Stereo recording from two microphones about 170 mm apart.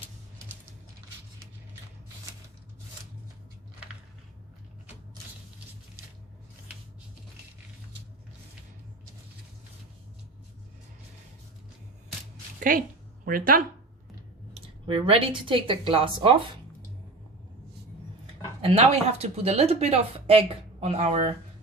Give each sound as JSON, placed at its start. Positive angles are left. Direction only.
{"t": 12.5, "sound": "a sound", "side_deg": -55}
{"t": 13.2, "sound": "speech", "side_deg": -55}
{"t": 14.8, "sound": "speech", "side_deg": -35}
{"t": 18.6, "sound": "speech", "side_deg": -35}